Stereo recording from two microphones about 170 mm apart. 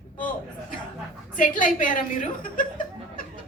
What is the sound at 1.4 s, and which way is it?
A woman's voice, 50° left (ahead or behind).